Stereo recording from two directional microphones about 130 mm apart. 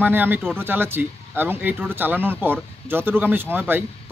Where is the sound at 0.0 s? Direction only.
15° right (ahead or behind).